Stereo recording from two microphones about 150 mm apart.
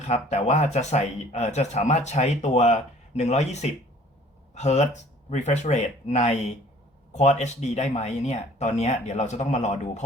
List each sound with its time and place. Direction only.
0.1 s speech: 45° left (ahead or behind)